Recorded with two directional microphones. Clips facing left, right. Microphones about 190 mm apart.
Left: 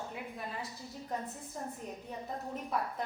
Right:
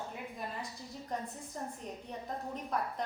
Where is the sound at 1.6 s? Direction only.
5° left (ahead or behind).